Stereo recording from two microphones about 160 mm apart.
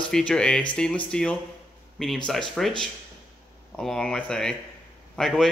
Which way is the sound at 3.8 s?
5° left (ahead or behind).